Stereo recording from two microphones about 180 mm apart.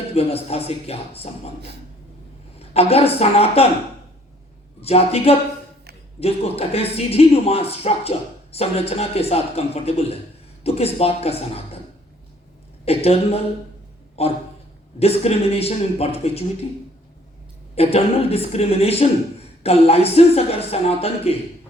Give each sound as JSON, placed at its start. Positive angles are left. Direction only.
{"t": 0.1, "sound": "speech", "side_deg": 35}
{"t": 2.6, "sound": "speech", "side_deg": 35}
{"t": 4.8, "sound": "speech", "side_deg": 35}
{"t": 12.8, "sound": "speech", "side_deg": 35}
{"t": 17.7, "sound": "speech", "side_deg": 35}